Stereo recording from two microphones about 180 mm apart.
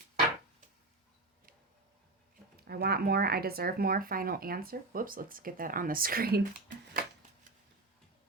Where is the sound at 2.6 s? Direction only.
60° right (ahead or behind).